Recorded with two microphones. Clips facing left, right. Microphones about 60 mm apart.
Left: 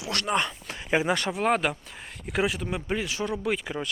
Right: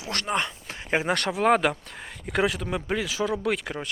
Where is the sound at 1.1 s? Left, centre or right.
Right.